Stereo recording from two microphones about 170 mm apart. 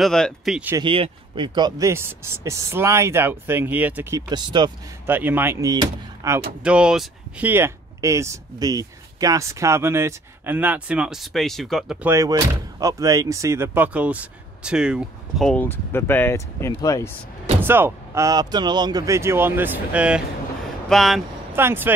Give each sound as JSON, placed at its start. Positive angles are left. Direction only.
{"t": 0.0, "sound": "speech", "side_deg": 0}
{"t": 0.7, "sound": "speech", "side_deg": -30}
{"t": 4.3, "sound": "speech", "side_deg": -25}
{"t": 5.0, "sound": "speech", "side_deg": -10}
{"t": 6.6, "sound": "speech", "side_deg": -5}
{"t": 12.0, "sound": "speech", "side_deg": -15}
{"t": 17.6, "sound": "speech", "side_deg": -10}
{"t": 21.5, "sound": "speech", "side_deg": -15}